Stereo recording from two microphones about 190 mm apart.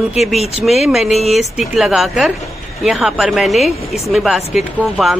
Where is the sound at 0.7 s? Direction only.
Centre (ahead or behind).